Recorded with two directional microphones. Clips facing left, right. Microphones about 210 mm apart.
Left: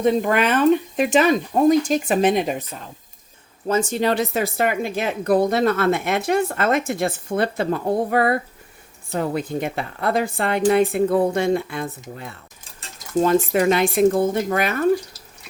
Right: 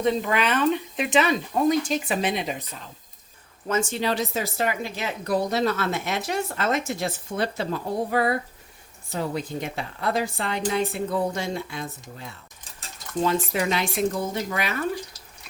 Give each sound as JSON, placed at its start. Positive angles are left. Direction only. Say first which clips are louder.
{"t": 0.0, "sound": "speech", "louder": "left 5 dB", "side_deg": 50}
{"t": 3.7, "sound": "speech", "louder": "left 5 dB", "side_deg": 35}